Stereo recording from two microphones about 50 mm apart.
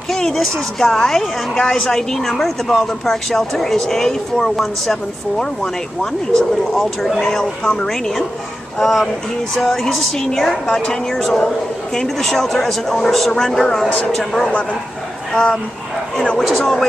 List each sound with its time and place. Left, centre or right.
0.1 s a woman's voice: centre
6.3 s speech: centre
7.2 s a woman's voice: centre
8.7 s a woman's voice: centre
16.3 s speech: centre